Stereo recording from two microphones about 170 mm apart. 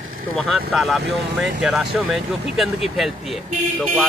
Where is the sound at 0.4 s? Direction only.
Centre (ahead or behind).